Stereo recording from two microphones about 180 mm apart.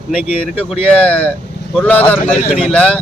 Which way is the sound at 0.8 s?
5° left (ahead or behind).